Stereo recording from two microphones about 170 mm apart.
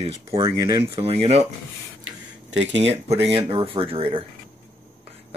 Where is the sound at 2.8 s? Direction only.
40° right (ahead or behind).